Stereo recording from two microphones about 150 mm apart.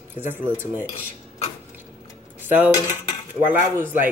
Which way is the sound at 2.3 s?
10° right (ahead or behind).